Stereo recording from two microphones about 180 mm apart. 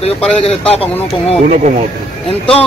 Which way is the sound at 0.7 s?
35° left (ahead or behind).